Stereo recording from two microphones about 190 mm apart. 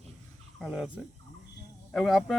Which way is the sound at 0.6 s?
Centre (ahead or behind).